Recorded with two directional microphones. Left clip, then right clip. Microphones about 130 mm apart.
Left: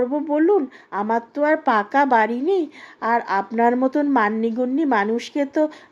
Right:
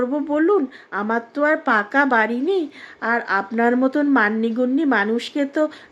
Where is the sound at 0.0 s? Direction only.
15° left (ahead or behind).